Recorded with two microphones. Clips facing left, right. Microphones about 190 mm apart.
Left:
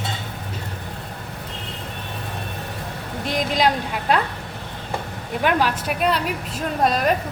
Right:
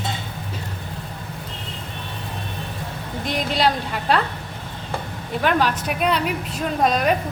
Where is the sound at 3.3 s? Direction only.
10° left (ahead or behind).